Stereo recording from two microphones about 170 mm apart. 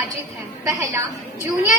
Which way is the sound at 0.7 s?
20° right (ahead or behind).